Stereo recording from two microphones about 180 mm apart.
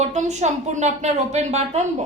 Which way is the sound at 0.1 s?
40° right (ahead or behind).